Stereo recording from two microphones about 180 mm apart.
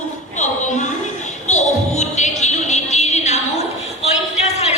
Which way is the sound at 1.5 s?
40° left (ahead or behind).